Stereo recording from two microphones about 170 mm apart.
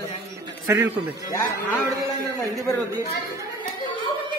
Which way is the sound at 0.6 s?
15° right (ahead or behind).